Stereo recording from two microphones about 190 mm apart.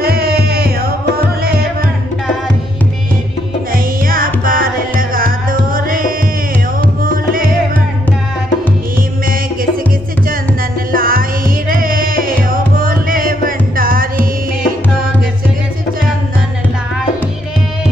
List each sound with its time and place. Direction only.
0.0 s music: 55° right (ahead or behind)
1.4 s tabla: 50° right (ahead or behind)
3.7 s music: 50° right (ahead or behind)
10.9 s music: 50° right (ahead or behind)